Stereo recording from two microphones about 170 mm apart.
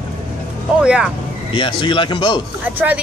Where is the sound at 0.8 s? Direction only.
5° right (ahead or behind).